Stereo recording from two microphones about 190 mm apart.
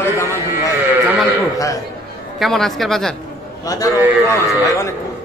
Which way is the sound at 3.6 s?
20° left (ahead or behind).